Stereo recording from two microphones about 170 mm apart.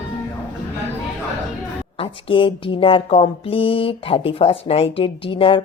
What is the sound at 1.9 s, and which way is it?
Speech, 30° left (ahead or behind).